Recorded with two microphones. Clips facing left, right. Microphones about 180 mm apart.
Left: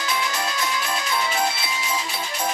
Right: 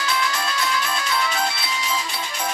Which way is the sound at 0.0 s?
20° left (ahead or behind).